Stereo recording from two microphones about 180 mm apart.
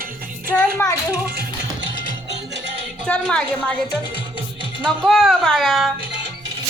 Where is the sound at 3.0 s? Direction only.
5° left (ahead or behind).